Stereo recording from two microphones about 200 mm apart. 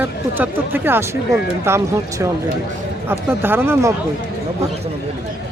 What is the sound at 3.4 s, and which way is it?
Speech, 10° right (ahead or behind).